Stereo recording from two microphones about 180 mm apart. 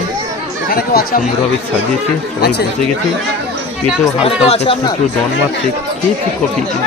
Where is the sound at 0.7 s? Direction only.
60° left (ahead or behind).